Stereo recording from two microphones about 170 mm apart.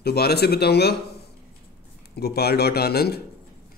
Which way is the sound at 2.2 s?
70° left (ahead or behind).